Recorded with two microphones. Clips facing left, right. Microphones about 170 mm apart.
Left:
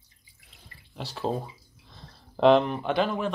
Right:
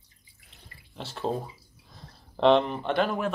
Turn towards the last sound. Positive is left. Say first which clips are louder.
# even
turn(degrees=-5)  # may be behind; listen again after turning